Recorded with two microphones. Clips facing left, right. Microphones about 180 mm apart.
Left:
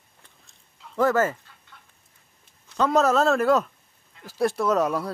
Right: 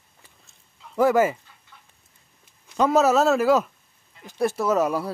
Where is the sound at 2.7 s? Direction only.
10° right (ahead or behind).